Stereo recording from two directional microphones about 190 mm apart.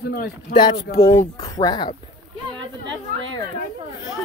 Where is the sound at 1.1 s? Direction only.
20° left (ahead or behind).